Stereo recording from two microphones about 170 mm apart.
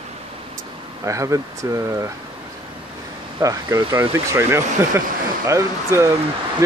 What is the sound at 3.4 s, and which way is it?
Speech, 20° right (ahead or behind).